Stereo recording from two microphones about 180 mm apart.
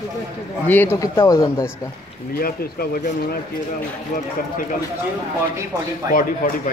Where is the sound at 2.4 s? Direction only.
55° left (ahead or behind).